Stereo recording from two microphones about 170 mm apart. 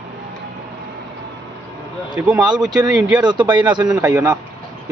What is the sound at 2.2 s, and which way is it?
Speech, 5° right (ahead or behind).